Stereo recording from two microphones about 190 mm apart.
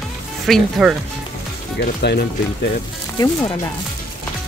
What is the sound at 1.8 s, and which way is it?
Speech, 60° left (ahead or behind).